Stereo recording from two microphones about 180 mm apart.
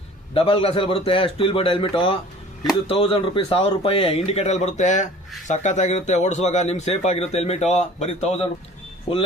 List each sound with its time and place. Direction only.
0.3 s speech: 30° left (ahead or behind)